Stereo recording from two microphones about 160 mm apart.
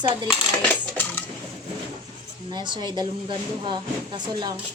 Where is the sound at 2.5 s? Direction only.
30° right (ahead or behind).